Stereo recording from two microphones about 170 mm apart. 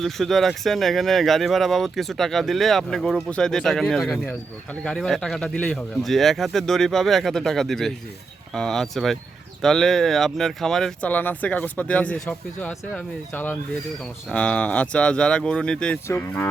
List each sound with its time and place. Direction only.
0.0 s speech: centre (ahead or behind)